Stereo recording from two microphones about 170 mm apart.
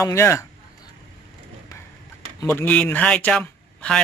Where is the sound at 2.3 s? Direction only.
15° left (ahead or behind).